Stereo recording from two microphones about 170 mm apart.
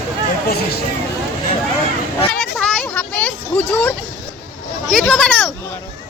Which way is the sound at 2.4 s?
Centre (ahead or behind).